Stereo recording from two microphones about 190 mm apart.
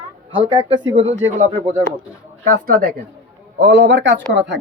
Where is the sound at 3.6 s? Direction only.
70° right (ahead or behind).